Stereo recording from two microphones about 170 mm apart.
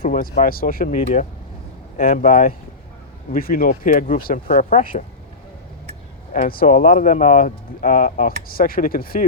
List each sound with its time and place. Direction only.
0.0 s speech: 55° left (ahead or behind)
6.3 s speech: 55° left (ahead or behind)